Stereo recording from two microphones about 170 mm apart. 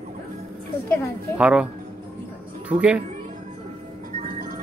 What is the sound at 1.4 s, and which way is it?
Speech, 5° right (ahead or behind).